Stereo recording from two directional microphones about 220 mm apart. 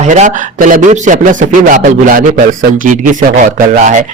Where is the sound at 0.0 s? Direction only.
35° right (ahead or behind).